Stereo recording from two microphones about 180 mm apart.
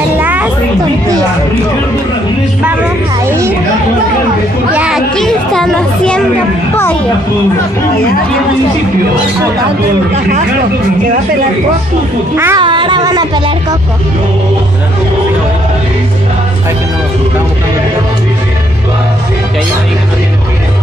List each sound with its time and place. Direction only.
0.2 s a sound: 10° right (ahead or behind)
3.3 s music: 15° right (ahead or behind)
4.7 s children playing: 5° right (ahead or behind)
12.4 s a child's voice: 15° right (ahead or behind)
12.6 s music: 25° right (ahead or behind)